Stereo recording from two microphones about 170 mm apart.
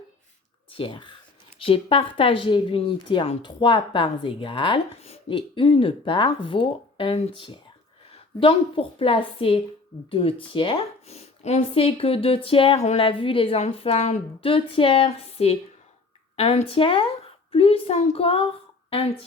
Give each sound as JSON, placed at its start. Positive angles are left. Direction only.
{"t": 0.7, "sound": "a woman's voice", "side_deg": 30}